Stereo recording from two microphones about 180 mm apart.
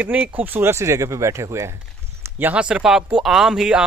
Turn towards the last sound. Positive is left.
turn(degrees=-5)  # may be behind; listen again after turning